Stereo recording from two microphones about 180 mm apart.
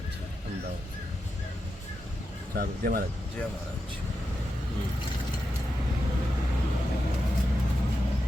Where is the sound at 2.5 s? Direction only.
55° right (ahead or behind).